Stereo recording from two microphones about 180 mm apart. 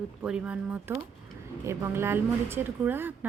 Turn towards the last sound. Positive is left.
turn(degrees=-10)  # may be behind; listen again after turning